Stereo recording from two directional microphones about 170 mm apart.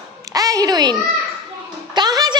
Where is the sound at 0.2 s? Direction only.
20° right (ahead or behind).